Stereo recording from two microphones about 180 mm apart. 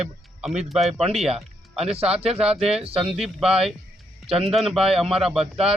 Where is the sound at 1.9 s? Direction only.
35° right (ahead or behind).